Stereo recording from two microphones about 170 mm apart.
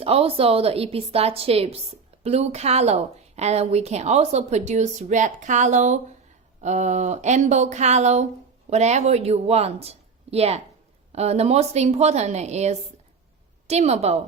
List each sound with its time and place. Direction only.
0.0 s a woman's voice: 35° right (ahead or behind)